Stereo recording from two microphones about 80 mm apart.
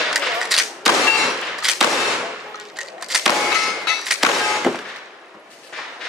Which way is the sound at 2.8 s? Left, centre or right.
Centre.